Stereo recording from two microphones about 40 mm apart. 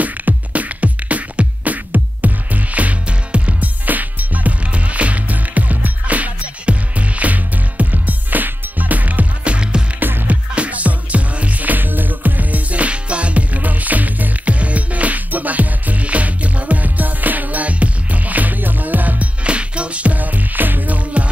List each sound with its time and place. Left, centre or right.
0.0 s music: right
9.4 s music: right
10.2 s music: right
19.4 s music: right